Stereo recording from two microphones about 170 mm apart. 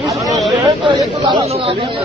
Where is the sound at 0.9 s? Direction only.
30° right (ahead or behind).